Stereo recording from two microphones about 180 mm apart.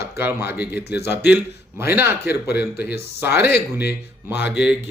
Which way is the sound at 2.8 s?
65° left (ahead or behind).